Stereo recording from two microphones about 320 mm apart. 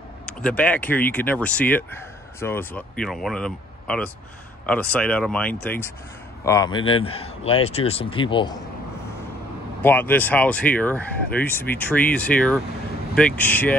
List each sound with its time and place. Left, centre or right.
0.3 s a man's voice: centre
9.8 s speech: centre